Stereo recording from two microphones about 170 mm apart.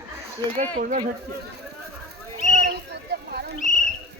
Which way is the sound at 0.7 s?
55° right (ahead or behind).